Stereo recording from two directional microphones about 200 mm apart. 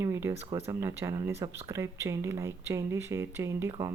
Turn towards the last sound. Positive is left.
turn(degrees=-15)  # may be behind; listen again after turning